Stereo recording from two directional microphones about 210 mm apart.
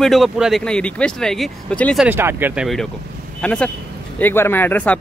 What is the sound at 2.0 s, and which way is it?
Speech, 10° right (ahead or behind).